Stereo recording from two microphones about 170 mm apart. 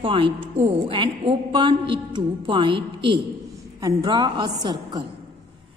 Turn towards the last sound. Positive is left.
turn(degrees=-25)  # may be behind; listen again after turning